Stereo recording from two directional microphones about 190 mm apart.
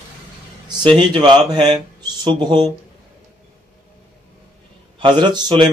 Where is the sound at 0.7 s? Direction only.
25° right (ahead or behind).